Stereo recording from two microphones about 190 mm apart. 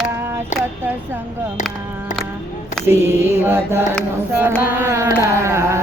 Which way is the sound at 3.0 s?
15° right (ahead or behind).